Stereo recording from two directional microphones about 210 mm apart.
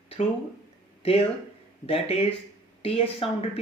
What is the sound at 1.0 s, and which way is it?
Speech, 30° left (ahead or behind).